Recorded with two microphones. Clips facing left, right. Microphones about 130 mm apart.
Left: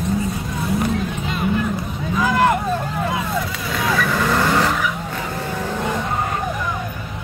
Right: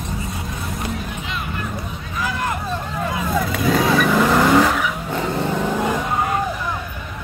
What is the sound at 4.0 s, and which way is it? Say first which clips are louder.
Vehicle: right 3 dB; 15° right (ahead or behind).